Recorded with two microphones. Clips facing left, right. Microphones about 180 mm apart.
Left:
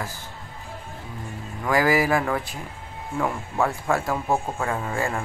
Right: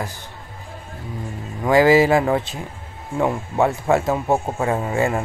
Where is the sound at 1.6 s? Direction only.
25° right (ahead or behind).